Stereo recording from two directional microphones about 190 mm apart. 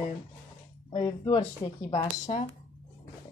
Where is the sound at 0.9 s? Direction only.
25° left (ahead or behind).